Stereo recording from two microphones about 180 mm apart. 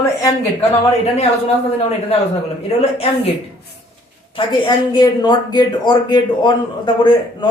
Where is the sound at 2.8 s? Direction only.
35° left (ahead or behind).